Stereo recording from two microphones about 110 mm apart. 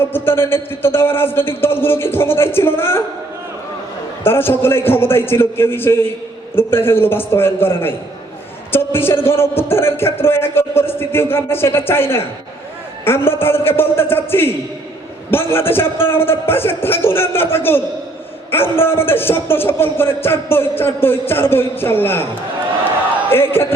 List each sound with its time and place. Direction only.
0.0 s a man's voice: 20° left (ahead or behind)
4.2 s a man's voice: 20° left (ahead or behind)
23.3 s a man's voice: 20° left (ahead or behind)